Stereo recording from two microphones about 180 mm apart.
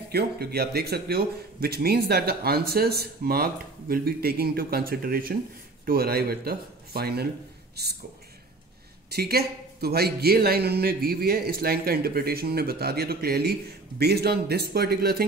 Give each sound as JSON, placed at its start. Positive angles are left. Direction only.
{"t": 0.1, "sound": "a man's voice", "side_deg": -65}
{"t": 9.1, "sound": "a man's voice", "side_deg": -60}